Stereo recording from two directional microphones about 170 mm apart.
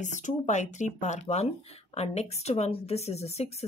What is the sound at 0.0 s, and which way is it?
A woman's voice, 45° left (ahead or behind).